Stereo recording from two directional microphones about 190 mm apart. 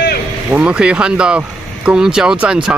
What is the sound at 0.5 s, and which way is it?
Speech, 5° right (ahead or behind).